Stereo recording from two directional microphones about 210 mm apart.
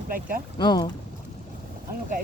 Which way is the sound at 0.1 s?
40° right (ahead or behind).